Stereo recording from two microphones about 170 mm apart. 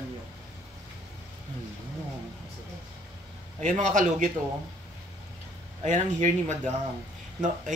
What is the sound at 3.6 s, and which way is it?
Speech, 50° right (ahead or behind).